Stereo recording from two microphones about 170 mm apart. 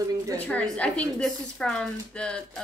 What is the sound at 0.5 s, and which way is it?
Speech, 5° left (ahead or behind).